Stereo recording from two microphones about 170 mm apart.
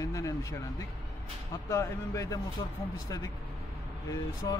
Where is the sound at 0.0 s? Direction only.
20° left (ahead or behind).